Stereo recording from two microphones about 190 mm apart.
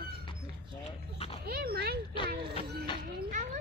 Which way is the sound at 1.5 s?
55° right (ahead or behind).